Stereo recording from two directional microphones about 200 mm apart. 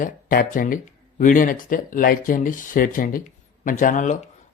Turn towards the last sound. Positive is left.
turn(degrees=40)  # may be behind; listen again after turning